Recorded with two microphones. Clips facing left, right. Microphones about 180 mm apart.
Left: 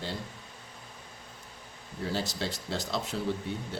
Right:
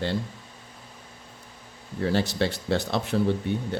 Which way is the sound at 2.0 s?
70° right (ahead or behind).